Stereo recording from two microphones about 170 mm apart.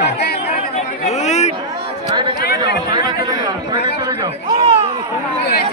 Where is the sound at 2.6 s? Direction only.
25° right (ahead or behind).